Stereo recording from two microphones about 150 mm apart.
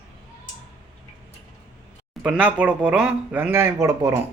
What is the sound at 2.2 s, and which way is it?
Speech, 10° right (ahead or behind).